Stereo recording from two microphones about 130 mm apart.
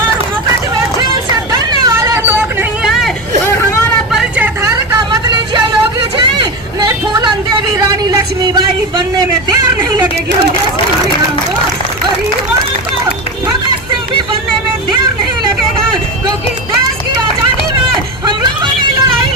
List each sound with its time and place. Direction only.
1.8 s hubbub: 25° right (ahead or behind)
4.1 s vehicle: 5° right (ahead or behind)
4.6 s vehicle: 25° right (ahead or behind)
7.9 s a sound: 30° right (ahead or behind)